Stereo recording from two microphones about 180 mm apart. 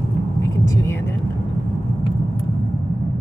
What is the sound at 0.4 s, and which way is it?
Vehicle, 20° left (ahead or behind).